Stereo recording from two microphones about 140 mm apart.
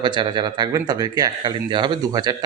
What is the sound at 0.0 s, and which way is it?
Speech, 35° right (ahead or behind).